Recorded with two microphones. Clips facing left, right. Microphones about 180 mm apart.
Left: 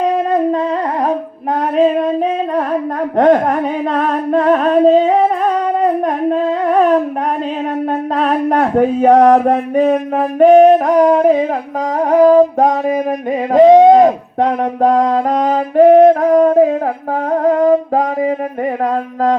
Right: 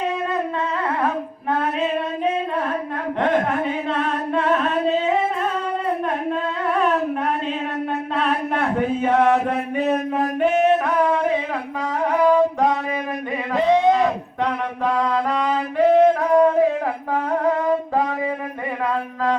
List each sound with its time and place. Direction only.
3.2 s a sound: 45° left (ahead or behind)
6.0 s humming: 40° left (ahead or behind)
8.1 s mantra: 40° left (ahead or behind)
10.4 s music: 40° left (ahead or behind)
11.9 s a sound: 45° left (ahead or behind)
17.3 s music: 45° left (ahead or behind)
18.9 s mantra: 45° left (ahead or behind)